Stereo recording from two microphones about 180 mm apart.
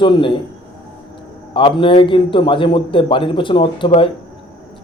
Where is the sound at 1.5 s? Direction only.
30° left (ahead or behind).